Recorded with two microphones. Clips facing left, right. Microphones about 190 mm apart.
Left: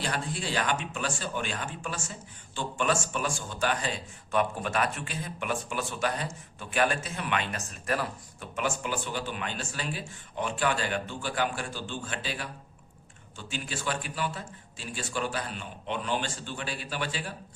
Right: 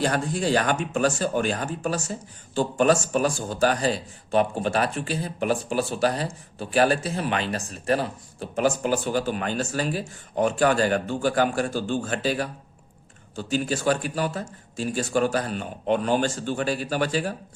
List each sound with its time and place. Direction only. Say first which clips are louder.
0.0 s speech: right 9 dB; 45° right (ahead or behind)